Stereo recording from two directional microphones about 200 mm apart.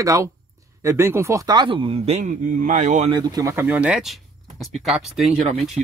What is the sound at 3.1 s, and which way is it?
Speech, 20° right (ahead or behind).